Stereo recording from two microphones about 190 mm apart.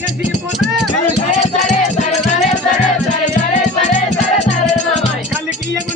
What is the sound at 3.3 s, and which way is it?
Music, 35° left (ahead or behind).